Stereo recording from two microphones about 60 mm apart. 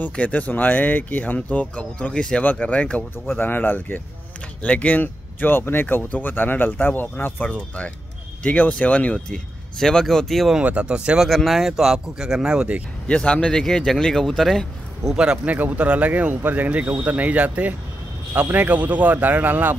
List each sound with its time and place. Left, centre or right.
0.1 s speech: left
3.3 s speech: left
7.4 s speech: left; by 10.5 s centre
10.6 s speech: centre
11.1 s speech: centre
13.1 s speech: centre
15.1 s speech: centre
15.5 s speech: right